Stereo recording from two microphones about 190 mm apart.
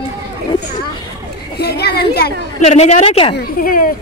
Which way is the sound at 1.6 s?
55° left (ahead or behind).